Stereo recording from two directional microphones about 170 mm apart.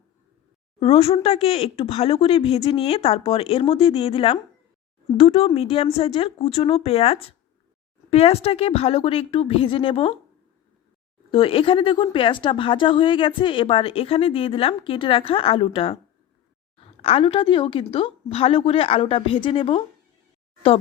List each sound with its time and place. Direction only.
0.8 s speech: 35° left (ahead or behind)
11.3 s speech: 30° left (ahead or behind)